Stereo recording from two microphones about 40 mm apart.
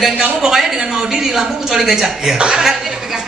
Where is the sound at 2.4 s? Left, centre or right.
Right.